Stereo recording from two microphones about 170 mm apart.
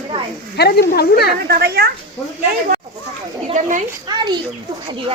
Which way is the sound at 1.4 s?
70° right (ahead or behind).